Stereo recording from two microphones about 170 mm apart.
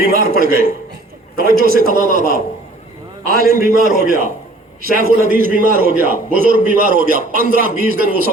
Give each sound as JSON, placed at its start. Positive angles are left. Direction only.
{"t": 0.0, "sound": "a man's voice", "side_deg": -60}